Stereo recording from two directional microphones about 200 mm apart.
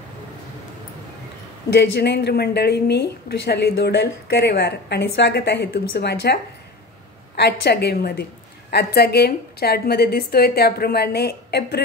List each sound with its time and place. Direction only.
1.8 s a woman's voice: 60° left (ahead or behind)